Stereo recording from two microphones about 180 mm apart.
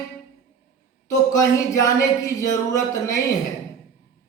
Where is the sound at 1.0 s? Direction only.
20° left (ahead or behind).